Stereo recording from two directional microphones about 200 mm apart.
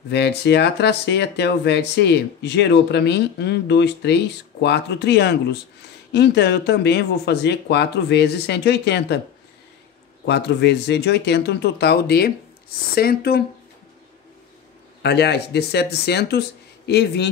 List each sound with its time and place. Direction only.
0.1 s speech: 55° left (ahead or behind)
10.2 s speech: 60° left (ahead or behind)
15.0 s speech: 55° left (ahead or behind)